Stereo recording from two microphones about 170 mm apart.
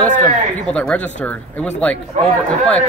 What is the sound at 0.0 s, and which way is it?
Speech, 5° left (ahead or behind).